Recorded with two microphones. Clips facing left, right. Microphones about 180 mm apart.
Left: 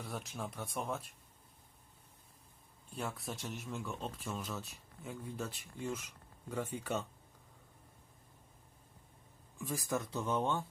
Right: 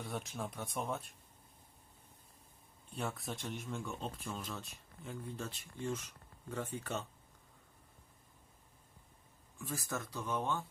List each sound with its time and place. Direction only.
0.0 s speech: centre (ahead or behind)
2.9 s speech: centre (ahead or behind)
9.6 s speech: 15° left (ahead or behind)